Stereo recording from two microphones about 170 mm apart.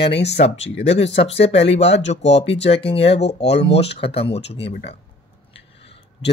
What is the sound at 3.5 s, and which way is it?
Speech, 35° left (ahead or behind).